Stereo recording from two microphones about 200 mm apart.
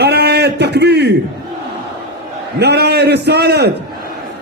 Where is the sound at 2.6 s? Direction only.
55° right (ahead or behind).